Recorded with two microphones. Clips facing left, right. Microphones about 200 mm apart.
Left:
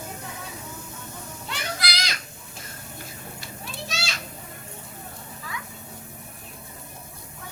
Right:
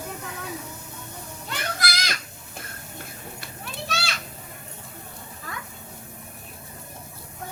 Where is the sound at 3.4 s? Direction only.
60° right (ahead or behind).